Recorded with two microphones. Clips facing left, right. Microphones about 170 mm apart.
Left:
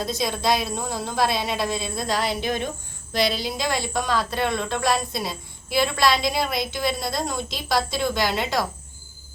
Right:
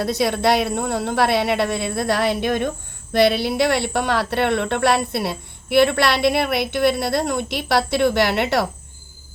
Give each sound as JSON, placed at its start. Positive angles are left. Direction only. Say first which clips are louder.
{"t": 0.0, "sound": "speech", "louder": "right 6 dB", "side_deg": -65}